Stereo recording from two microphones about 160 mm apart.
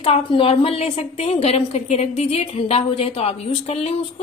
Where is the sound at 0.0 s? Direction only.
35° left (ahead or behind).